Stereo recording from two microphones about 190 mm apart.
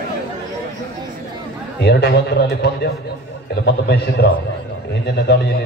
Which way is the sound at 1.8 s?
60° left (ahead or behind).